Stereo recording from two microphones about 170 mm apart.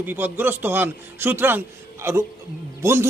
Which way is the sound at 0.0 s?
10° right (ahead or behind).